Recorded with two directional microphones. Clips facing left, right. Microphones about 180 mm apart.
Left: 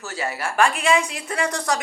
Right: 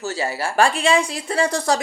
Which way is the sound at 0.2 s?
30° right (ahead or behind).